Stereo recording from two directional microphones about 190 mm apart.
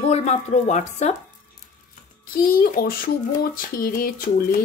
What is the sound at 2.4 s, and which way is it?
A woman's voice, 50° left (ahead or behind).